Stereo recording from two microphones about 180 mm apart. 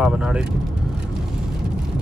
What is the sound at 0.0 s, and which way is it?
Speech, 5° right (ahead or behind).